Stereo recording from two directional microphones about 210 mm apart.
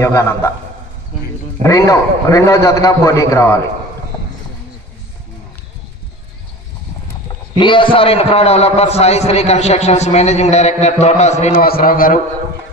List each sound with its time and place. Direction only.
0.0 s a man's voice: 15° left (ahead or behind)
1.6 s a man's voice: 15° left (ahead or behind)
7.5 s a man's voice: 20° left (ahead or behind)
11.6 s a man's voice: 45° left (ahead or behind)